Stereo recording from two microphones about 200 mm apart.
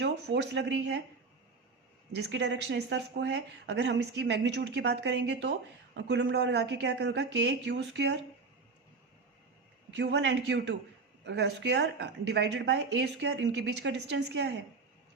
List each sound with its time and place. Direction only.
0.0 s speech: 60° right (ahead or behind)
2.1 s speech: 60° right (ahead or behind)
9.9 s speech: 60° right (ahead or behind)